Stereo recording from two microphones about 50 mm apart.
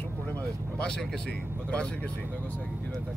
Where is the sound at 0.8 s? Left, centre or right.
Centre.